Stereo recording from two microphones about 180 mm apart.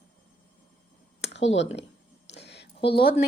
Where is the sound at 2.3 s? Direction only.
70° left (ahead or behind).